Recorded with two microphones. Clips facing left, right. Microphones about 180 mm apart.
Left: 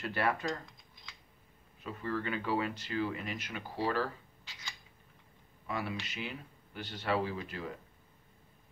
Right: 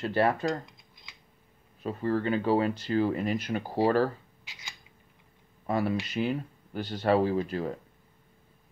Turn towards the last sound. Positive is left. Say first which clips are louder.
# right 10 dB
turn(degrees=-40)  # may be behind; listen again after turning